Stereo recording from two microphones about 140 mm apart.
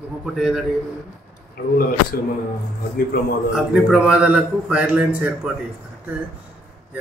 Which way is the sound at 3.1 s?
90° left.